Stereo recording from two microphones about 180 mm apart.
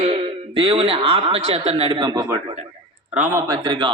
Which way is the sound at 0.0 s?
30° right (ahead or behind).